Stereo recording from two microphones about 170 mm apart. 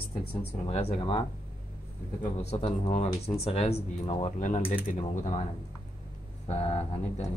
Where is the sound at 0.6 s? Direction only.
35° left (ahead or behind).